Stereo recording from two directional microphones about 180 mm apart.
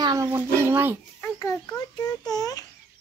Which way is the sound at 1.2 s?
15° left (ahead or behind).